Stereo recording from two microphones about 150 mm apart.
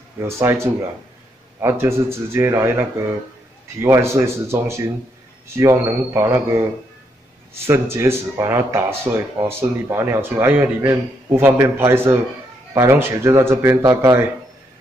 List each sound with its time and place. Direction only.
0.2 s speech: 15° right (ahead or behind)